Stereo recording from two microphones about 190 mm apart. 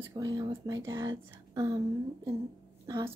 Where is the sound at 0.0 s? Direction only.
20° right (ahead or behind).